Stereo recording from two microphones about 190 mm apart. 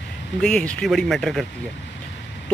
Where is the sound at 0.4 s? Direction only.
5° left (ahead or behind).